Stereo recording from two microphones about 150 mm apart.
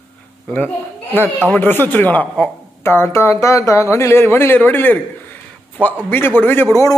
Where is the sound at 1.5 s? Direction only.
15° left (ahead or behind).